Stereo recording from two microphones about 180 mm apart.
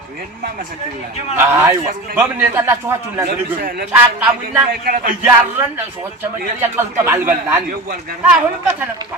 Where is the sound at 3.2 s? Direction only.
55° right (ahead or behind).